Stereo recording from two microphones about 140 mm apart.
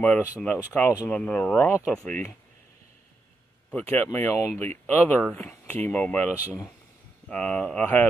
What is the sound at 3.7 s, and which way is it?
Speech, 15° left (ahead or behind).